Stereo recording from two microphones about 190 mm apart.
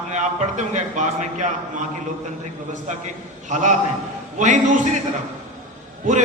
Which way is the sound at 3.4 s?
40° right (ahead or behind).